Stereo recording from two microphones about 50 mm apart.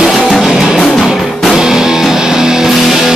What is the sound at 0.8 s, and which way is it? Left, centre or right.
Music, centre.